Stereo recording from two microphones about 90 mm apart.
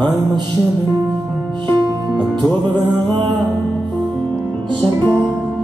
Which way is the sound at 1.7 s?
55° right (ahead or behind).